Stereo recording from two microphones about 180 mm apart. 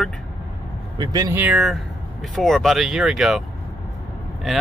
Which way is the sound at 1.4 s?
5° right (ahead or behind).